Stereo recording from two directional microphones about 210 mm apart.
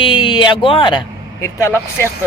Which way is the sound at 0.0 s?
25° left (ahead or behind).